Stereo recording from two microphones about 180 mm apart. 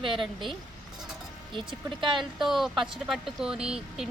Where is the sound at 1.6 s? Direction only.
25° right (ahead or behind).